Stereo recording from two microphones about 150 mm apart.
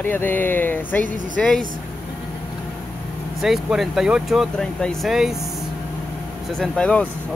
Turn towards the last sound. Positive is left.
turn(degrees=5)  # may be behind; listen again after turning